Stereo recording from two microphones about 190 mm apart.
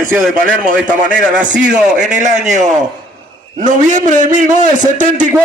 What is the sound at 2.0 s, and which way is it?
A man's voice, 40° right (ahead or behind).